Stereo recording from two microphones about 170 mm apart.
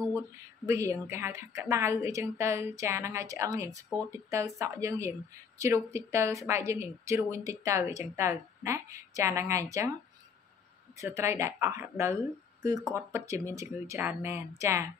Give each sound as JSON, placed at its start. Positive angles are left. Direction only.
{"t": 0.7, "sound": "a woman's voice", "side_deg": -15}
{"t": 11.0, "sound": "a woman's voice", "side_deg": -15}